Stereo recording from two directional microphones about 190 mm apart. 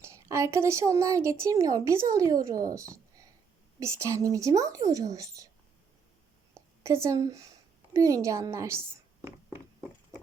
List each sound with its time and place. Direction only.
0.0 s a woman's voice: 15° right (ahead or behind)
6.5 s a sound: 15° right (ahead or behind)
7.9 s a woman's voice: 15° right (ahead or behind)